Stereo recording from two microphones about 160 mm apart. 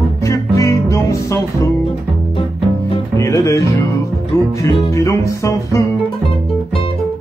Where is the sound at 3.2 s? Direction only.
20° left (ahead or behind).